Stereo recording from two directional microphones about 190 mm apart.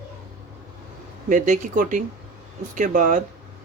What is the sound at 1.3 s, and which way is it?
Speech, 40° right (ahead or behind).